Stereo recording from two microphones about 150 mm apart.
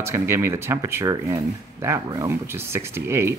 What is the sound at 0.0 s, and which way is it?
Speech, 15° right (ahead or behind).